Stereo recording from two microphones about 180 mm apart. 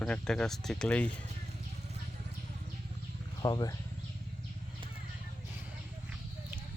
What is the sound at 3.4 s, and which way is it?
Speech, 20° left (ahead or behind).